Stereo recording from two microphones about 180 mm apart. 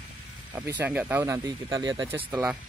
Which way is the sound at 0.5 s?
15° right (ahead or behind).